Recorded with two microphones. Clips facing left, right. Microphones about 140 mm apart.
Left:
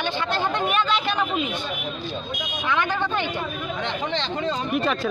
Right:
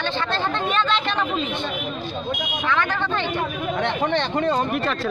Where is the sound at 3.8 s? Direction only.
55° right (ahead or behind).